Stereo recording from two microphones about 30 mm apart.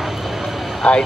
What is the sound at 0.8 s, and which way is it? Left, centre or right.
Speech, left.